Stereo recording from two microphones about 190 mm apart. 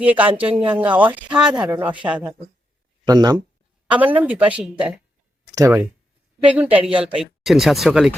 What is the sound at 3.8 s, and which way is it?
A woman's voice, 5° right (ahead or behind).